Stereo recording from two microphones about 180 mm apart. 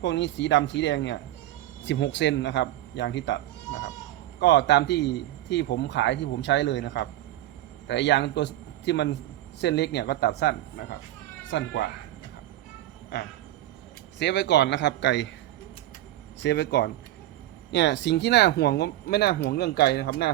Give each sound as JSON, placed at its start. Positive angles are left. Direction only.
{"t": 0.0, "sound": "a man's voice", "side_deg": 90}
{"t": 11.5, "sound": "speech", "side_deg": 90}
{"t": 14.2, "sound": "speech", "side_deg": 75}
{"t": 16.4, "sound": "speech", "side_deg": 70}